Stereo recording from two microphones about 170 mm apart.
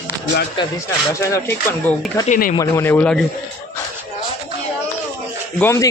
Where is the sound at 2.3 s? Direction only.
55° left (ahead or behind).